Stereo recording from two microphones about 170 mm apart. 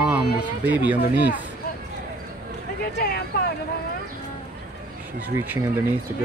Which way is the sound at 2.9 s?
70° left (ahead or behind).